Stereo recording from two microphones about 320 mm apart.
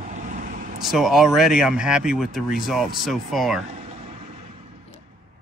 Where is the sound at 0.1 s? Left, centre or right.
Right.